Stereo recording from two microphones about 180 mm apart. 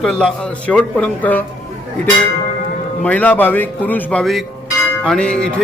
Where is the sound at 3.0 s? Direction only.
10° left (ahead or behind).